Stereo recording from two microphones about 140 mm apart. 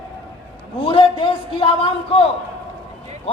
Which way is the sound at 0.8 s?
40° left (ahead or behind).